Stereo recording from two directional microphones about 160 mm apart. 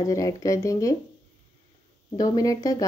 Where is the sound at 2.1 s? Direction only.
20° left (ahead or behind).